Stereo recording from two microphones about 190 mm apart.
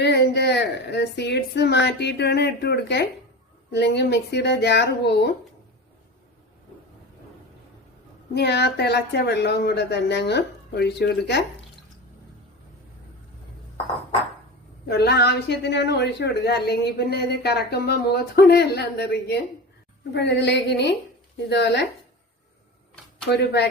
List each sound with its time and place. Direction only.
0.0 s a woman's voice: 60° left (ahead or behind)
8.3 s a woman's voice: 60° left (ahead or behind)
14.8 s a woman's voice: 60° left (ahead or behind)